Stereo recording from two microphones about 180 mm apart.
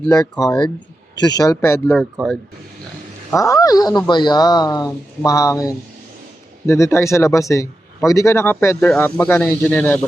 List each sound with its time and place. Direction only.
0.1 s speech: 20° left (ahead or behind)
2.2 s speech: 5° left (ahead or behind)
3.3 s speech: 20° left (ahead or behind)